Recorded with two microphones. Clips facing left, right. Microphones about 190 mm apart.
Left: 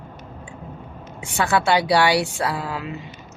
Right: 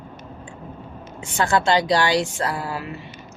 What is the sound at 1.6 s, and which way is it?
Speech, 10° left (ahead or behind).